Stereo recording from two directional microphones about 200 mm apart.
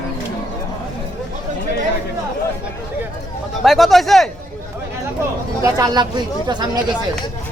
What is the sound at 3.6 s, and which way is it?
Speech, centre (ahead or behind).